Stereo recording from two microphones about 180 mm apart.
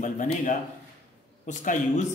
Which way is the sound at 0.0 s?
45° left (ahead or behind).